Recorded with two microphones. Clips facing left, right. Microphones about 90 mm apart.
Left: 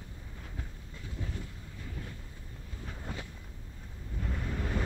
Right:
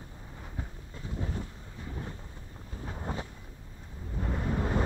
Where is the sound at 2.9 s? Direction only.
30° right (ahead or behind).